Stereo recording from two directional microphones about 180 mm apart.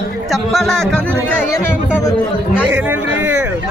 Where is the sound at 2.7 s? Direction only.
10° right (ahead or behind).